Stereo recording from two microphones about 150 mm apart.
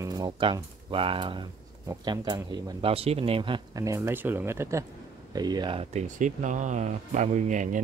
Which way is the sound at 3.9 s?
20° right (ahead or behind).